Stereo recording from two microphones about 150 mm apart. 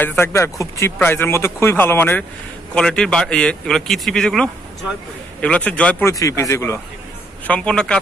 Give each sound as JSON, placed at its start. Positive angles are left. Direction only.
{"t": 0.0, "sound": "speech", "side_deg": 15}
{"t": 6.1, "sound": "speech", "side_deg": 20}
{"t": 7.4, "sound": "speech", "side_deg": 5}